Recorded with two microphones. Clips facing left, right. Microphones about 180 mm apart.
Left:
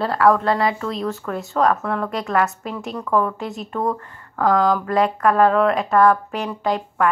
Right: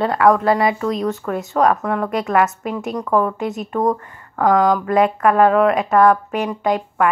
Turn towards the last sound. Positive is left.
turn(degrees=-5)  # may be behind; listen again after turning